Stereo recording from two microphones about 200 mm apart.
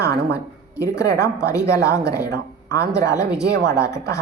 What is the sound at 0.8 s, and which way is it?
A woman's voice, 15° left (ahead or behind).